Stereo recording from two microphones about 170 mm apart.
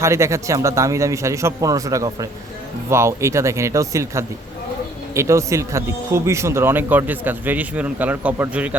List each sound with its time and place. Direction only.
0.0 s speech: 15° right (ahead or behind)